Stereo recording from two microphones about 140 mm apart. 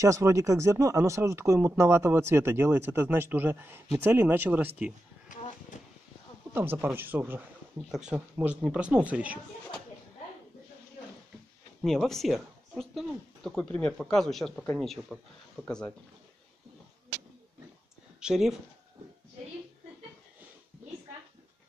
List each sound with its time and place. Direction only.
0.0 s speech: 20° right (ahead or behind)
5.7 s a sound: 60° left (ahead or behind)
6.5 s speech: 15° right (ahead or behind)
11.8 s speech: centre (ahead or behind)
18.2 s speech: 5° right (ahead or behind)